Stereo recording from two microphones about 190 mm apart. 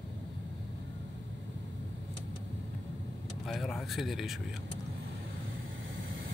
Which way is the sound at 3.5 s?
Centre (ahead or behind).